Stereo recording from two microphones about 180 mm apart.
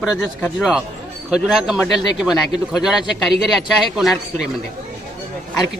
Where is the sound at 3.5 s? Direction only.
Centre (ahead or behind).